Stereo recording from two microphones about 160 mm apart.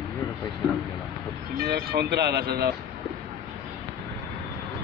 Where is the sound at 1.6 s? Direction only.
75° right (ahead or behind).